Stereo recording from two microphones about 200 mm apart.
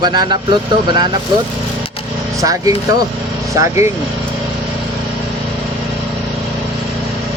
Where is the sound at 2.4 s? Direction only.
15° right (ahead or behind).